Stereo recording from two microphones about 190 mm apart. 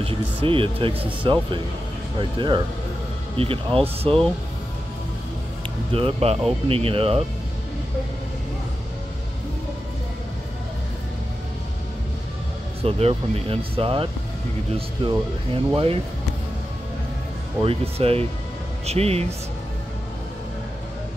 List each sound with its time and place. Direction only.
0.0 s speech: 30° right (ahead or behind)
5.9 s speech: 30° right (ahead or behind)
12.8 s speech: 30° right (ahead or behind)
17.6 s speech: 30° right (ahead or behind)